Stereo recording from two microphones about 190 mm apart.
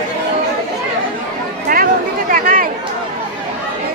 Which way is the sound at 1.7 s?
45° right (ahead or behind).